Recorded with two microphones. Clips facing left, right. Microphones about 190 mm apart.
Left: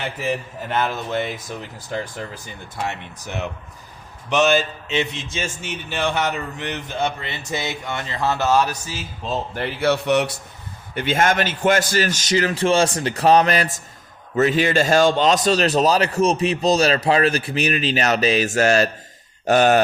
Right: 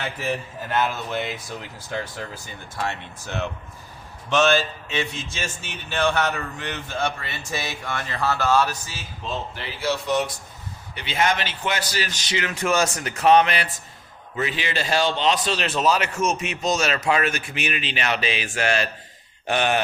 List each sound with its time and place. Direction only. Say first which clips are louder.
0.2 s speech: left 3 dB; 15° left (ahead or behind)
2.3 s a man's voice: left 2 dB; 15° left (ahead or behind)
9.3 s speech: left 6 dB; 55° left (ahead or behind); by 10.3 s 70° left (ahead or behind)
10.9 s a man's voice: left 5 dB; 50° left (ahead or behind)